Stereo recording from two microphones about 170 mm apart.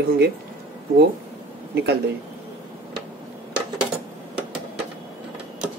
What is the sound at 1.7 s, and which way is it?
Speech, 80° right.